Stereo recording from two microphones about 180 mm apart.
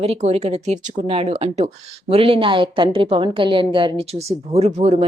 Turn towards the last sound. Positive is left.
turn(degrees=-35)  # may be behind; listen again after turning